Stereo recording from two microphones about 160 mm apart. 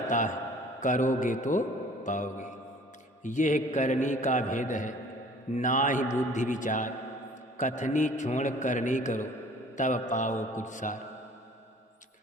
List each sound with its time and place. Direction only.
0.1 s a man's voice: 50° left (ahead or behind)